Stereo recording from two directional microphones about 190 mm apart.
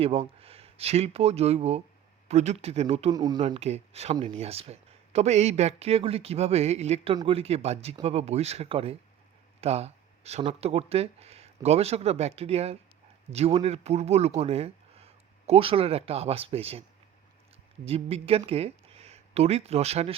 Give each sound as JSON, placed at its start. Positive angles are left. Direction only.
{"t": 0.0, "sound": "speech", "side_deg": -30}
{"t": 3.1, "sound": "speech", "side_deg": -20}
{"t": 3.4, "sound": "speech", "side_deg": -35}
{"t": 17.8, "sound": "speech", "side_deg": -30}